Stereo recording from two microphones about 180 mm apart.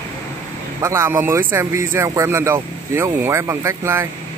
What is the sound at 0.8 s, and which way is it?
Speech, 15° right (ahead or behind).